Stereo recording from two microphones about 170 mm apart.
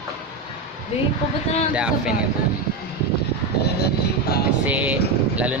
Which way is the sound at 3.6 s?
70° left (ahead or behind).